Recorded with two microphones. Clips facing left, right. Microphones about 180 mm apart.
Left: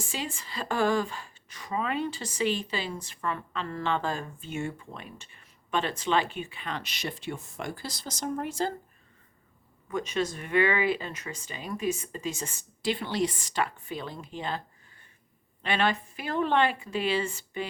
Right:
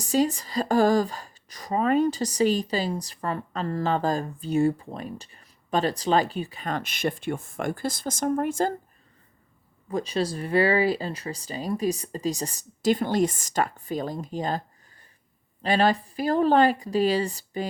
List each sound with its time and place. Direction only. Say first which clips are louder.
0.0 s speech: right 13 dB; 40° right (ahead or behind)
9.9 s speech: right 3 dB; 35° right (ahead or behind)
15.6 s speech: right 5 dB; 35° right (ahead or behind)